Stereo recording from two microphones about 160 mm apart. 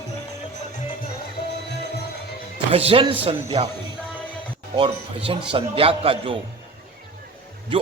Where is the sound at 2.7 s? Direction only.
35° right (ahead or behind).